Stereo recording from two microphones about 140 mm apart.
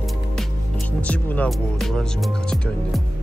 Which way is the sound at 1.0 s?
10° left (ahead or behind).